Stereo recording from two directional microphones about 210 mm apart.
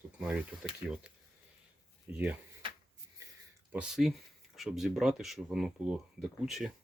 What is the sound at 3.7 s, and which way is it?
Speech, 5° right (ahead or behind).